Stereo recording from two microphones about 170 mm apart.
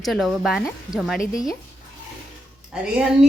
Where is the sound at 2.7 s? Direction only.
5° right (ahead or behind).